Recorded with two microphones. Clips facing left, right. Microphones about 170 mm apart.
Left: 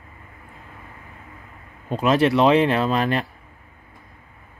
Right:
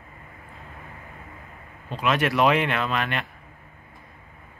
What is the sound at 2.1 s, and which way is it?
Speech, 30° left (ahead or behind).